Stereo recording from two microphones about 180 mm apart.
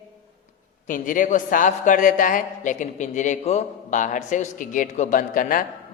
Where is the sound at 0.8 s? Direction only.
45° left (ahead or behind).